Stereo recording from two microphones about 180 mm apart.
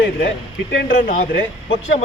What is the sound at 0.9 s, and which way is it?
Speech, 50° left (ahead or behind).